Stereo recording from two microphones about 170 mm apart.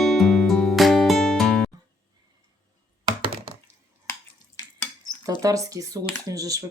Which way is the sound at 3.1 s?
30° right (ahead or behind).